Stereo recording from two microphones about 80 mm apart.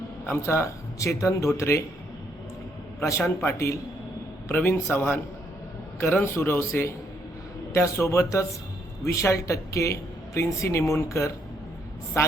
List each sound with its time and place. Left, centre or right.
0.3 s speech: left
3.0 s a man's voice: left